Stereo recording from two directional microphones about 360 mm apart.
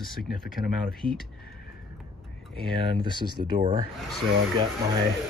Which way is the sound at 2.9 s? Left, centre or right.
Centre.